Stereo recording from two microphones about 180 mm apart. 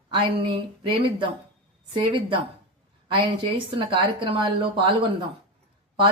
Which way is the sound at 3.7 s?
30° right (ahead or behind).